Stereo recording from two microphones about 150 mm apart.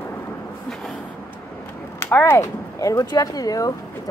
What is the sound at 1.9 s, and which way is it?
Speech, 15° left (ahead or behind).